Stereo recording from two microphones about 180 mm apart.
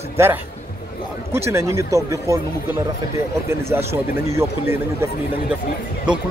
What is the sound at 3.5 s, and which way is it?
Speech, 15° right (ahead or behind).